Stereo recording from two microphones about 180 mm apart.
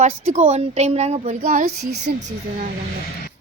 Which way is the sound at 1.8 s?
65° right (ahead or behind).